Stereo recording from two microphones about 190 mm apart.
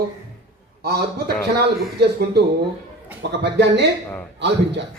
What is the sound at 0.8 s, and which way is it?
A man's voice, 55° right (ahead or behind).